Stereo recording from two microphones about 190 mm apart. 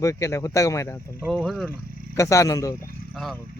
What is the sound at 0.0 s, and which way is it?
Speech, 15° left (ahead or behind).